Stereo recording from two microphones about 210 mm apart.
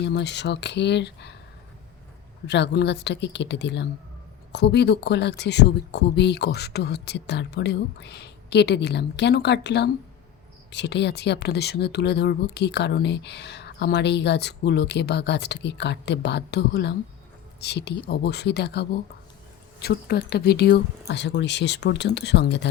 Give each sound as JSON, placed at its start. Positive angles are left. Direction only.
{"t": 0.0, "sound": "speech", "side_deg": 55}
{"t": 2.5, "sound": "speech", "side_deg": 55}